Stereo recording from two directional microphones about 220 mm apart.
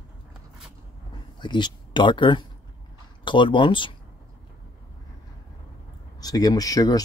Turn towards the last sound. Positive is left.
turn(degrees=15)  # may be behind; listen again after turning